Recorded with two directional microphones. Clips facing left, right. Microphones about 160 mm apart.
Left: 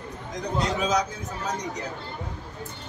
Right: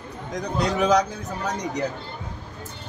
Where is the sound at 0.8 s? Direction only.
65° right (ahead or behind).